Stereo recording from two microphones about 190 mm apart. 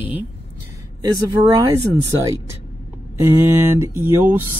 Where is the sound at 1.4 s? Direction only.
20° right (ahead or behind).